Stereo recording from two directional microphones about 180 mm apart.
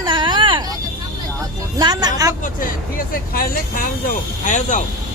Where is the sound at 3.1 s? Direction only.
55° left (ahead or behind).